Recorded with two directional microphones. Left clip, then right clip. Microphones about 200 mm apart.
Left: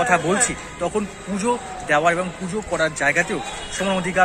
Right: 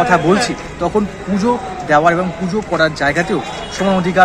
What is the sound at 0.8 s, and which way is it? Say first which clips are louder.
A man's voice: right 7 dB; 20° left (ahead or behind).